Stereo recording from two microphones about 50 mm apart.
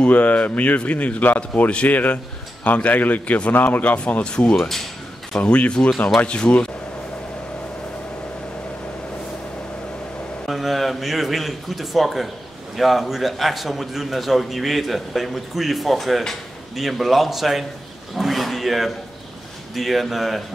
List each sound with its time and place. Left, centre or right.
0.1 s a man's voice: left
10.4 s a man's voice: centre
18.1 s a sound: centre
19.7 s a man's voice: centre